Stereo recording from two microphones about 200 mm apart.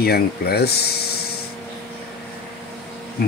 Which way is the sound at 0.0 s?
50° left (ahead or behind).